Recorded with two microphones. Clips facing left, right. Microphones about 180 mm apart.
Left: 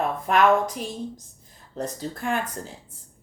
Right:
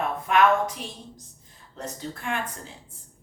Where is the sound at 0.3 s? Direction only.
35° left (ahead or behind).